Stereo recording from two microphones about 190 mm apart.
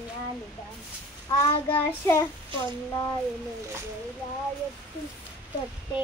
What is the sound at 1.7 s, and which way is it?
Child singing, 10° left (ahead or behind).